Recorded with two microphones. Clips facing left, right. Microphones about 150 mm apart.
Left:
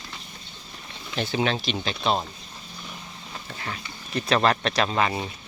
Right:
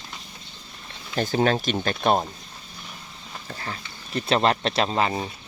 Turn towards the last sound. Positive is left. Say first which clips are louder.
# right 1 dB
turn(degrees=-30)  # may be behind; listen again after turning